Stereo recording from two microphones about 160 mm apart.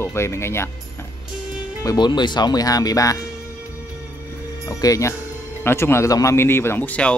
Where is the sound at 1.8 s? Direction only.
25° left (ahead or behind).